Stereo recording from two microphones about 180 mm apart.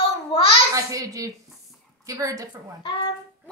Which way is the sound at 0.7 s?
20° right (ahead or behind).